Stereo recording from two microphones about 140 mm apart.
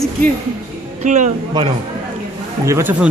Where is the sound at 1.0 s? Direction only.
60° right (ahead or behind).